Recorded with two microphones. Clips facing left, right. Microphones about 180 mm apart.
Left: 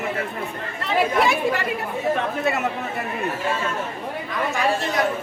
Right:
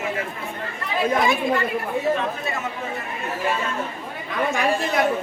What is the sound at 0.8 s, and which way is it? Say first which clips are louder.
Speech: left 1 dB; 75° left (ahead or behind).